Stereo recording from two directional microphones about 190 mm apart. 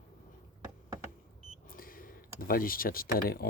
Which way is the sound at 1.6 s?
50° left (ahead or behind).